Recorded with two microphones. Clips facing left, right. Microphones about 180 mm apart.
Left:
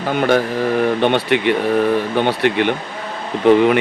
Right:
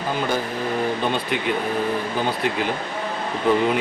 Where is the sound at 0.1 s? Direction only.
70° left (ahead or behind).